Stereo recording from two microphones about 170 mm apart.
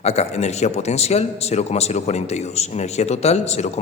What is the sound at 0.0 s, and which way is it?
Speech, 40° left (ahead or behind).